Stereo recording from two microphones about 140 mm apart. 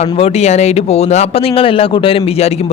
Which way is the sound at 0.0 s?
50° left (ahead or behind).